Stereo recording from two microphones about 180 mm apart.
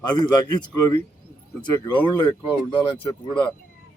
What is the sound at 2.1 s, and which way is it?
Speech, 30° left (ahead or behind).